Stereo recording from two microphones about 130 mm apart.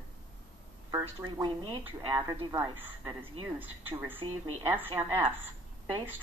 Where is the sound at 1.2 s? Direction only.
35° right (ahead or behind).